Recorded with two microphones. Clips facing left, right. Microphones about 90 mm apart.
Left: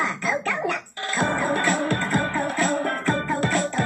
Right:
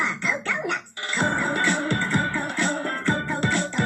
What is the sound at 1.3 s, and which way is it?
Music, 40° left (ahead or behind).